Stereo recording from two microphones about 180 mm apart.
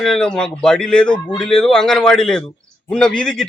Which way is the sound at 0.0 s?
5° left (ahead or behind).